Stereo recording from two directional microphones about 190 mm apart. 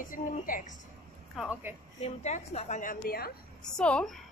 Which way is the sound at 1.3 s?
Centre (ahead or behind).